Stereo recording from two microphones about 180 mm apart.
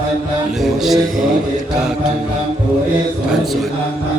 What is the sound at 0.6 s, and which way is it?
Music, centre (ahead or behind).